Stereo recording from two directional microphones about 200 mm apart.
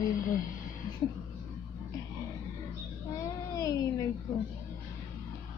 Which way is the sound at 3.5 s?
15° left (ahead or behind).